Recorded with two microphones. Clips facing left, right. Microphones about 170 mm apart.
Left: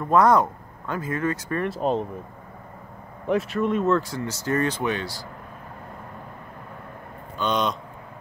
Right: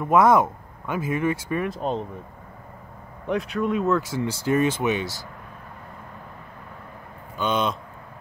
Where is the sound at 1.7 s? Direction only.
5° left (ahead or behind).